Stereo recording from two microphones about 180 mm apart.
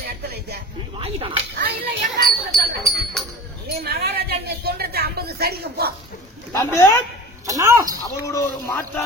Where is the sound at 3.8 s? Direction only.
65° right (ahead or behind).